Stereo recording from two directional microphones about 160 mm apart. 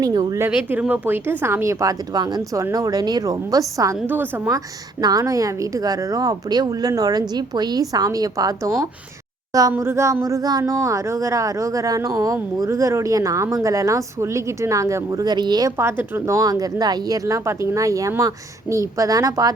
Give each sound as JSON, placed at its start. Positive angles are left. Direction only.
{"t": 0.0, "sound": "speech", "side_deg": -25}
{"t": 0.4, "sound": "speech", "side_deg": -10}